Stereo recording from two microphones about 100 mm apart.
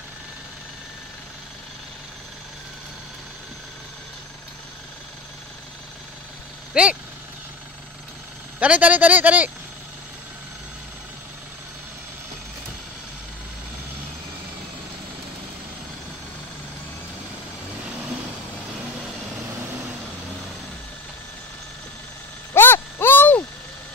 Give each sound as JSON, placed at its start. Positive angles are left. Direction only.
{"t": 6.7, "sound": "speech", "side_deg": -10}
{"t": 8.5, "sound": "speech", "side_deg": -15}
{"t": 22.5, "sound": "a sound", "side_deg": 25}